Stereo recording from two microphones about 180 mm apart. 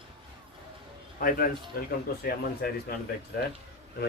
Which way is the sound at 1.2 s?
50° left (ahead or behind).